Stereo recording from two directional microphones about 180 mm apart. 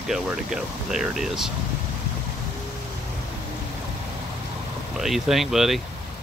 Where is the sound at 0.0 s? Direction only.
Centre (ahead or behind).